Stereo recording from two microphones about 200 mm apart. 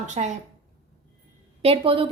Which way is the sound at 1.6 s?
25° right (ahead or behind).